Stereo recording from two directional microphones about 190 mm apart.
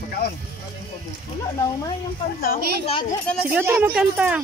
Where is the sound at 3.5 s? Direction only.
10° right (ahead or behind).